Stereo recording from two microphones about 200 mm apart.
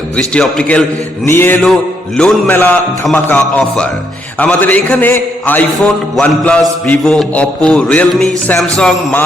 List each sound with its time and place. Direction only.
0.2 s a man's voice: 5° left (ahead or behind)